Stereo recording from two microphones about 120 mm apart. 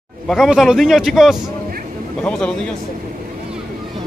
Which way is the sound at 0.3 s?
Centre (ahead or behind).